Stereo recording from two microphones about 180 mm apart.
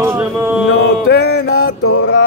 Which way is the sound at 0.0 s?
15° right (ahead or behind).